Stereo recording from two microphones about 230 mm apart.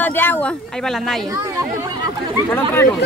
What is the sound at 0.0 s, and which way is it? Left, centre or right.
Speech, centre.